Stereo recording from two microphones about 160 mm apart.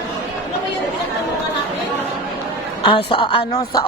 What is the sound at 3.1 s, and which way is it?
Speech, 30° left (ahead or behind).